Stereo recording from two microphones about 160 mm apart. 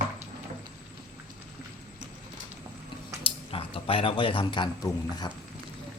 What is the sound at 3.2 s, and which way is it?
A man's voice, 35° left (ahead or behind).